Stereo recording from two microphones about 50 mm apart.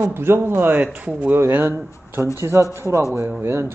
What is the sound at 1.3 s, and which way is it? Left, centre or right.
Speech, right.